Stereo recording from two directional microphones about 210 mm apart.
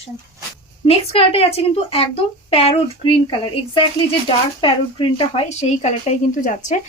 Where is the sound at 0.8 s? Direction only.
30° left (ahead or behind).